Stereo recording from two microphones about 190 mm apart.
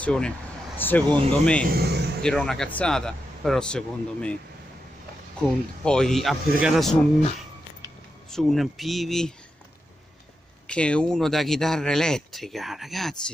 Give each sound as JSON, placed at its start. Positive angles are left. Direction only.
{"t": 0.0, "sound": "speech", "side_deg": 5}
{"t": 1.7, "sound": "a man's voice", "side_deg": -60}
{"t": 2.2, "sound": "speech", "side_deg": 5}
{"t": 5.9, "sound": "speech", "side_deg": 5}
{"t": 8.3, "sound": "speech", "side_deg": 0}
{"t": 10.7, "sound": "speech", "side_deg": 5}